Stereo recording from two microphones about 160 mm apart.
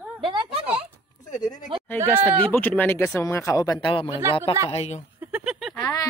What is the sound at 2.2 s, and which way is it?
Speech, 10° left (ahead or behind).